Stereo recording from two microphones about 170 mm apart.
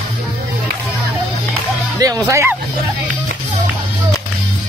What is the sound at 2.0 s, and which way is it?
Speech, 20° right (ahead or behind).